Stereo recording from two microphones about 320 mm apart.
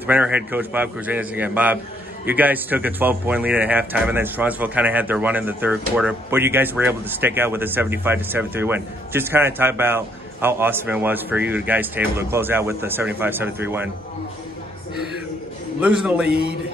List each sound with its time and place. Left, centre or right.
0.0 s a man's voice: centre